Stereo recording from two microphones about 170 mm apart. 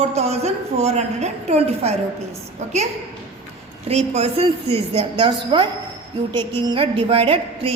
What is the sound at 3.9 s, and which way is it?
A woman's voice, 40° right (ahead or behind).